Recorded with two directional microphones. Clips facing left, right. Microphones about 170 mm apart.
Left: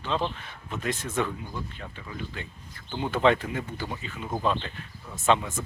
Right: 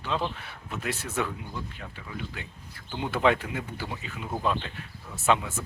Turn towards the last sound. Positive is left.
turn(degrees=-5)  # may be behind; listen again after turning